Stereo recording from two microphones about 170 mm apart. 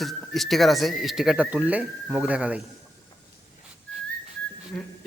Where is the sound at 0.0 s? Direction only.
Centre (ahead or behind).